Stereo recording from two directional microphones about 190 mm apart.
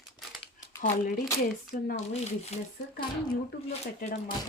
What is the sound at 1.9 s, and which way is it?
Speech, 35° left (ahead or behind).